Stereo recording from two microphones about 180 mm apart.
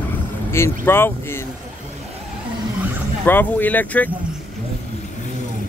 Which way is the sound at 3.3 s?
10° left (ahead or behind).